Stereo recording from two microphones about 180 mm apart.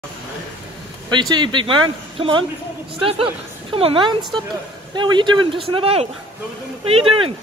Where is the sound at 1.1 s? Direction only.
25° right (ahead or behind).